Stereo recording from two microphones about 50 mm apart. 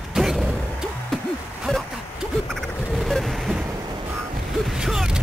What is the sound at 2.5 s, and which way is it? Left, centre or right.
Vehicle, centre.